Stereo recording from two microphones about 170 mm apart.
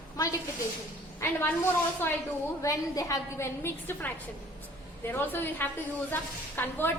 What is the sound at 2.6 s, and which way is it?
A woman's voice, 20° left (ahead or behind).